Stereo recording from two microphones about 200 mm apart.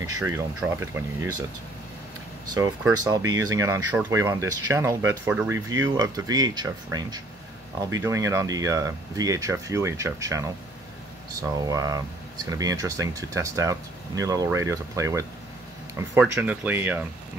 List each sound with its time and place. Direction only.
0.2 s speech: 15° right (ahead or behind)
2.5 s speech: 15° right (ahead or behind)
5.9 s speech: 20° right (ahead or behind)